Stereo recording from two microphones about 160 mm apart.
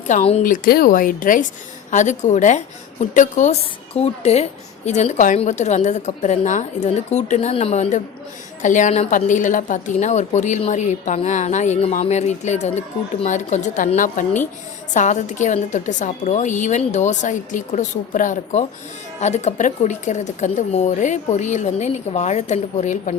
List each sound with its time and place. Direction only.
0.1 s speech: 40° left (ahead or behind)
0.4 s a woman's voice: 60° left (ahead or behind)